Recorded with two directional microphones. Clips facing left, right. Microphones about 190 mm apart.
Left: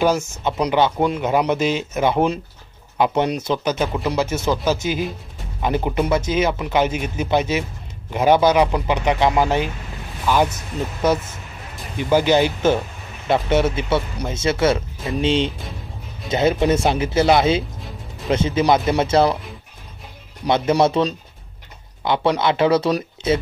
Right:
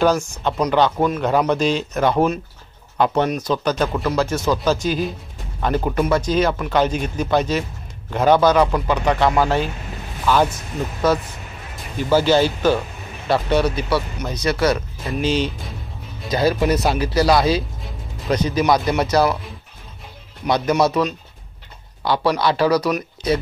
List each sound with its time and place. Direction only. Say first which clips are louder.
0.4 s speech: even; 15° left (ahead or behind)
20.4 s speech: left 1 dB; 25° left (ahead or behind)